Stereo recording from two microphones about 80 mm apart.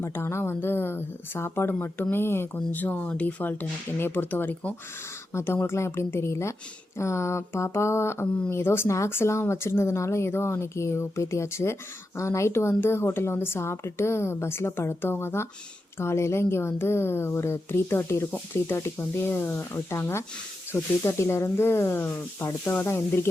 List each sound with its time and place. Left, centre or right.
0.0 s a woman's voice: left
5.3 s a woman's voice: left